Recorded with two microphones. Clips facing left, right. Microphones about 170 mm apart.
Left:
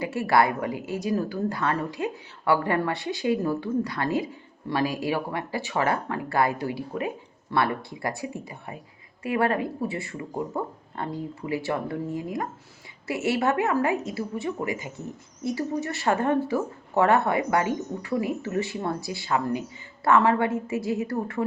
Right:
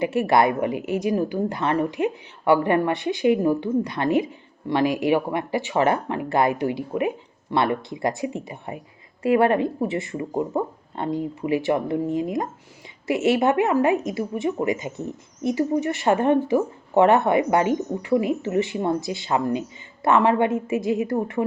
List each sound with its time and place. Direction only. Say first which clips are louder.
0.0 s a woman's voice: right 3 dB; 20° right (ahead or behind)